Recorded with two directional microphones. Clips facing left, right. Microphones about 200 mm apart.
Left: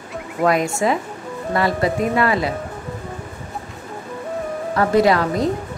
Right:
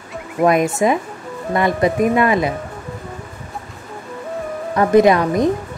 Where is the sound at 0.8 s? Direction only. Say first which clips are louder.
Right 3 dB; 20° right (ahead or behind).